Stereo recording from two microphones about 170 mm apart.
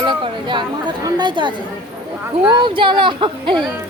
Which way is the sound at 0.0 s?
25° right (ahead or behind).